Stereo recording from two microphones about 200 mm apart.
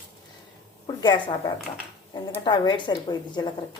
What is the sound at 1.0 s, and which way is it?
Speech, 25° left (ahead or behind).